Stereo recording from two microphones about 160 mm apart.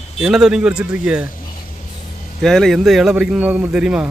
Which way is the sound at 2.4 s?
Centre (ahead or behind).